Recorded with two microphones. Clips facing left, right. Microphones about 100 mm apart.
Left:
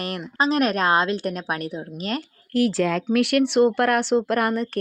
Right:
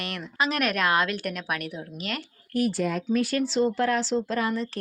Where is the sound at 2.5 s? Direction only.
90° left; by 4.7 s 60° left (ahead or behind).